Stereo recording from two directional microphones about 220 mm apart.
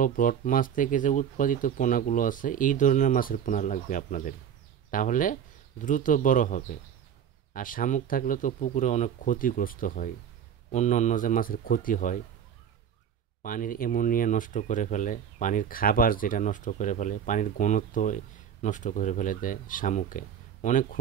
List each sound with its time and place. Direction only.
0.0 s speech: 40° left (ahead or behind)
13.4 s speech: 40° left (ahead or behind)